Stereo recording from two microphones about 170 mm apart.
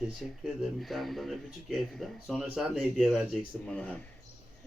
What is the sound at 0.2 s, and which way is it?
Speech, centre (ahead or behind).